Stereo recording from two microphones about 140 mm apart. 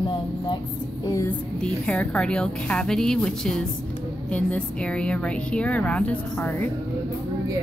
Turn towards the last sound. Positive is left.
turn(degrees=15)  # may be behind; listen again after turning